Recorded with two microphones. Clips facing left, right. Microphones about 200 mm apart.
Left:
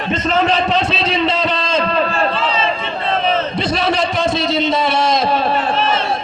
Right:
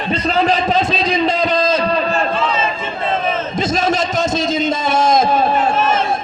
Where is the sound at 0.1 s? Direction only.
35° right (ahead or behind).